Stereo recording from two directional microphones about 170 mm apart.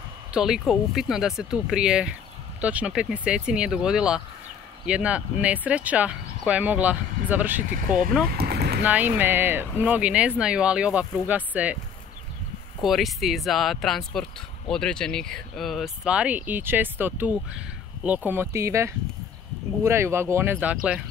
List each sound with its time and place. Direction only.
0.3 s speech: 5° right (ahead or behind)
8.3 s boat: 65° right (ahead or behind)
8.8 s speech: 10° right (ahead or behind)
12.8 s speech: centre (ahead or behind)